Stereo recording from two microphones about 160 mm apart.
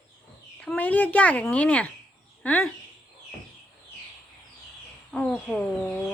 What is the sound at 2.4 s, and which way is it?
Speech, 10° left (ahead or behind).